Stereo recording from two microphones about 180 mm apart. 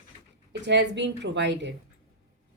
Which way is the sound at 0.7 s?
75° right (ahead or behind).